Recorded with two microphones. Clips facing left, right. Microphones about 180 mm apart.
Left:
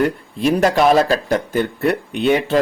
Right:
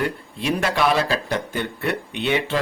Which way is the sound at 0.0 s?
45° left (ahead or behind).